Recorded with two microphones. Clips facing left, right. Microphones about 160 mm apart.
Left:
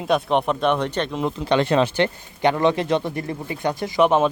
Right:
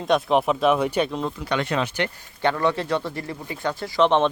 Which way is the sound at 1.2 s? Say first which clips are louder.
Left 5 dB; 20° left (ahead or behind).